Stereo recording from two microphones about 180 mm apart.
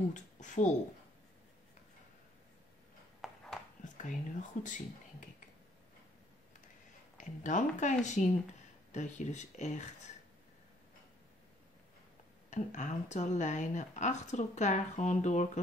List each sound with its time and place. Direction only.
0.1 s speech: 45° left (ahead or behind)
3.2 s a sound: centre (ahead or behind)
4.0 s speech: 45° left (ahead or behind)
7.2 s speech: 45° left (ahead or behind)
12.4 s speech: 40° left (ahead or behind)